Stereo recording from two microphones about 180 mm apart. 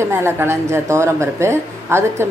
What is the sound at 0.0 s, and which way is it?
Speech, 15° right (ahead or behind).